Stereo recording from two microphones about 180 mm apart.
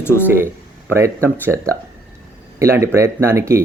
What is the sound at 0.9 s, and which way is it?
Speech, 15° right (ahead or behind).